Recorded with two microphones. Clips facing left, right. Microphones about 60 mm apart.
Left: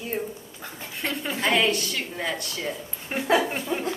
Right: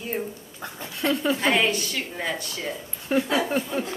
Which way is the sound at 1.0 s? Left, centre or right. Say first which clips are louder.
Right 7 dB; right.